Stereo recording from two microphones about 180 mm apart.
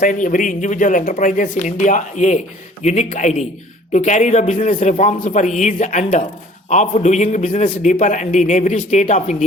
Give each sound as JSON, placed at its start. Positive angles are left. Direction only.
{"t": 0.0, "sound": "a man's voice", "side_deg": 45}